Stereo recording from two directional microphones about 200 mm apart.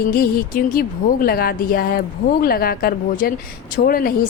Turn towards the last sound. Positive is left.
turn(degrees=45)  # may be behind; listen again after turning